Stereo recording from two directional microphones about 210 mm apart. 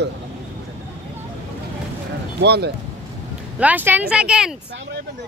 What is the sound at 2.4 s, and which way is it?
Speech, 50° right (ahead or behind).